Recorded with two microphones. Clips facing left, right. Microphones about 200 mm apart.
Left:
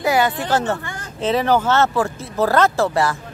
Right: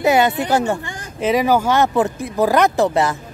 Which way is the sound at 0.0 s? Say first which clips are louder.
Right 3 dB; 20° right (ahead or behind).